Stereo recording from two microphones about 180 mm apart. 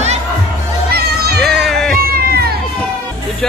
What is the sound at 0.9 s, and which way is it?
Music, 60° right (ahead or behind).